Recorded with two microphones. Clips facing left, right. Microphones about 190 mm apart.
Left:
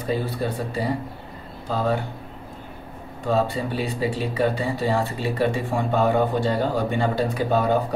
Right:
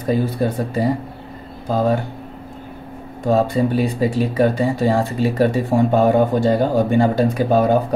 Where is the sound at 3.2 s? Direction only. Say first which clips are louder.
Right 6 dB; 45° right (ahead or behind).